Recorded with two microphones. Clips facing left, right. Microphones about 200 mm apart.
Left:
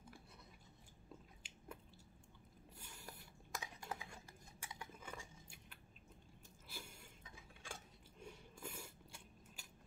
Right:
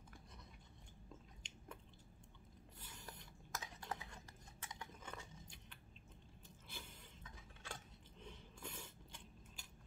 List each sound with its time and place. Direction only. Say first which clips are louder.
1.4 s chewing: right 2 dB; 5° left (ahead or behind)
2.8 s dishes: even; 10° left (ahead or behind)
8.2 s a sound: left 2 dB; 10° left (ahead or behind)